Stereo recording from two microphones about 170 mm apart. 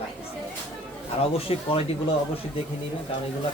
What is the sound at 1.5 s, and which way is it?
Speech, 35° left (ahead or behind).